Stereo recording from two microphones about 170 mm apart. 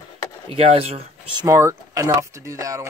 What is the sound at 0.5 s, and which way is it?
Speech, 35° right (ahead or behind).